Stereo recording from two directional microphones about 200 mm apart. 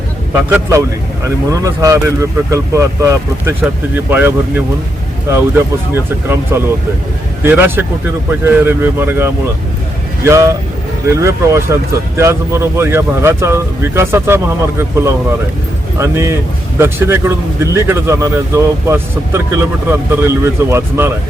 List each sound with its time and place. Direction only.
0.5 s a man's voice: 15° right (ahead or behind)
5.9 s a man's voice: 10° right (ahead or behind)